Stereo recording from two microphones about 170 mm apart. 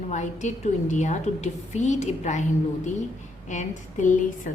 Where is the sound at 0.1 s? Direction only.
45° left (ahead or behind).